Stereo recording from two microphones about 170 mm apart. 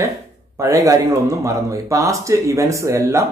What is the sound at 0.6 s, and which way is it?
Speech, 20° right (ahead or behind).